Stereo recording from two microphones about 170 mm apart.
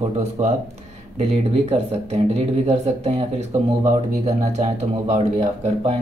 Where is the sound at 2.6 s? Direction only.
35° right (ahead or behind).